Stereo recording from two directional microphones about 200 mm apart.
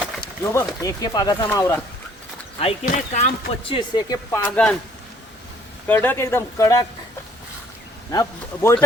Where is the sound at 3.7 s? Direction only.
25° left (ahead or behind).